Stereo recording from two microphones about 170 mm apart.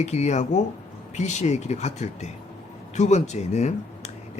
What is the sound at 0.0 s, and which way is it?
Speech, 40° left (ahead or behind).